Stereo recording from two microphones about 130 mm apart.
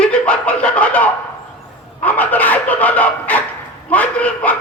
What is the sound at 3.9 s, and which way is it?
Speech, 10° left (ahead or behind).